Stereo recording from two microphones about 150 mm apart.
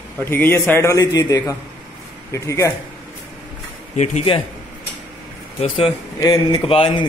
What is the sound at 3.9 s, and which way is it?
Speech, 50° left (ahead or behind).